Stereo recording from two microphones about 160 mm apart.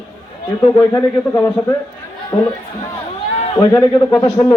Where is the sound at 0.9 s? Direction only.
20° left (ahead or behind).